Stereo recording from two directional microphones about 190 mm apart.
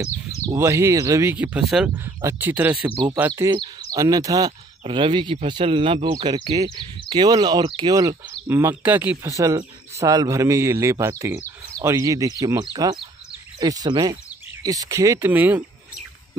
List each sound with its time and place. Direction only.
0.0 s a man's voice: 15° right (ahead or behind)